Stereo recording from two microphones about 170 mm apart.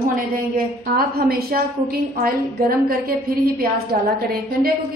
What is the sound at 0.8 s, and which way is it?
Speech, 60° right (ahead or behind).